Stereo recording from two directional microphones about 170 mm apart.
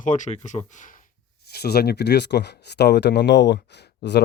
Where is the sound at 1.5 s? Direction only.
70° left (ahead or behind).